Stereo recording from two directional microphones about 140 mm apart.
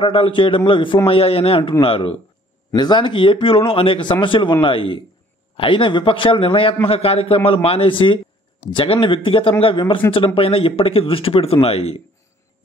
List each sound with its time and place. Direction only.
0.0 s a man's voice: 40° left (ahead or behind)